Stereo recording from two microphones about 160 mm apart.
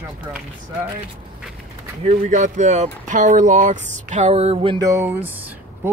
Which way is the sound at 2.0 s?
50° right (ahead or behind).